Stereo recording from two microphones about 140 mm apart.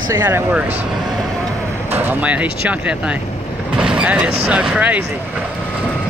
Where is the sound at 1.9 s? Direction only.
15° right (ahead or behind).